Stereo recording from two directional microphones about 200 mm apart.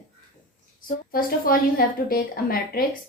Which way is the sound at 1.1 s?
45° left (ahead or behind).